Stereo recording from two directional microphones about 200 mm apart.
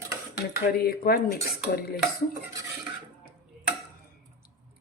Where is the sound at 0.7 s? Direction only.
50° left (ahead or behind).